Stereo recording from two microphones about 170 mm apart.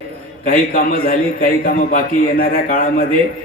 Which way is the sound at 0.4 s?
55° left (ahead or behind).